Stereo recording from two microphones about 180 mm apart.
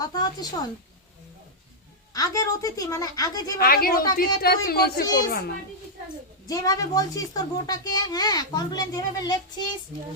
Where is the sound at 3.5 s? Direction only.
55° left (ahead or behind).